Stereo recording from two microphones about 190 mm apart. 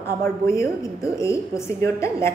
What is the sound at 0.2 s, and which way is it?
A woman's voice, 15° left (ahead or behind).